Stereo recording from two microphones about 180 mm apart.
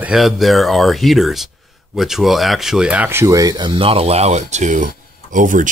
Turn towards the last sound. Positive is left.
turn(degrees=-45)  # may be behind; listen again after turning